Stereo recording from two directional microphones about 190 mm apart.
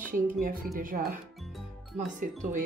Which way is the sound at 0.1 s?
45° right (ahead or behind).